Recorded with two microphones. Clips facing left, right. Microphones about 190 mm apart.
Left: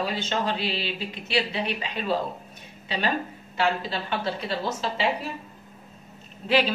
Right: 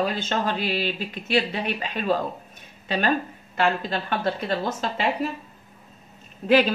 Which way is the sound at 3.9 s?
50° right (ahead or behind).